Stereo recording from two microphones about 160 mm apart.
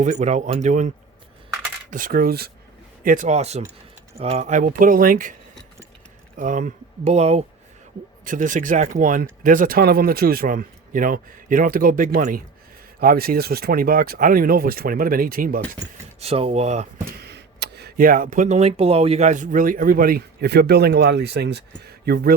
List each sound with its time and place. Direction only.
0.0 s speech: 45° right (ahead or behind)
1.9 s speech: 60° right (ahead or behind)
3.0 s speech: 55° right (ahead or behind)
6.3 s speech: 55° right (ahead or behind)
8.2 s speech: 55° right (ahead or behind)
16.2 s speech: 40° right (ahead or behind)
17.2 s speech: 90° right